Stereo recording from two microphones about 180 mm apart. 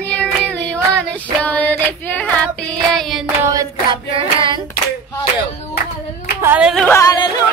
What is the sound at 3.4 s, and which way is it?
Hands, 20° right (ahead or behind).